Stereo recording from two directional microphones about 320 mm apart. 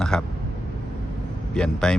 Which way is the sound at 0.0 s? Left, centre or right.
Centre.